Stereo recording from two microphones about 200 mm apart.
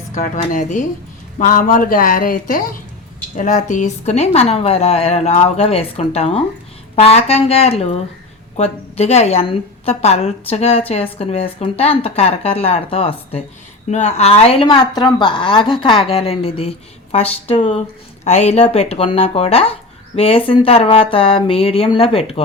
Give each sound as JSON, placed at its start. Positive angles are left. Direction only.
{"t": 0.1, "sound": "a woman's voice", "side_deg": 40}